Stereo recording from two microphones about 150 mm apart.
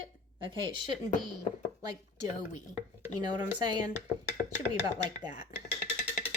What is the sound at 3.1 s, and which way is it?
Speech, 25° right (ahead or behind).